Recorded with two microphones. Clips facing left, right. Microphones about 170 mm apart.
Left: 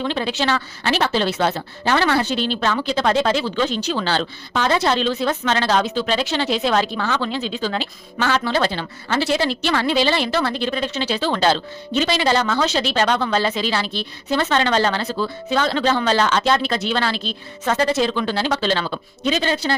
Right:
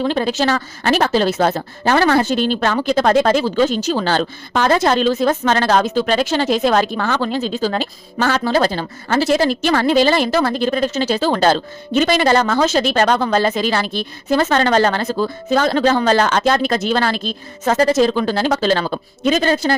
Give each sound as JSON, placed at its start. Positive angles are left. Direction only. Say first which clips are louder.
{"t": 0.0, "sound": "a woman's voice", "louder": "right 5 dB", "side_deg": -45}